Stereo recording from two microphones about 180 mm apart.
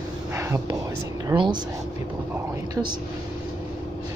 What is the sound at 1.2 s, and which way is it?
Speech, 25° right (ahead or behind).